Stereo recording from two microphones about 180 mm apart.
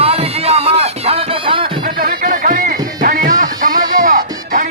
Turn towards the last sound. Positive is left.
turn(degrees=-50)  # may be behind; listen again after turning